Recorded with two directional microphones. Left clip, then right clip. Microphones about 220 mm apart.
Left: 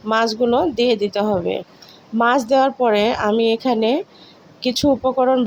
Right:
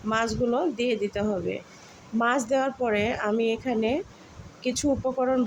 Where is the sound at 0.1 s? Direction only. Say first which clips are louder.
Left 9 dB; 20° left (ahead or behind).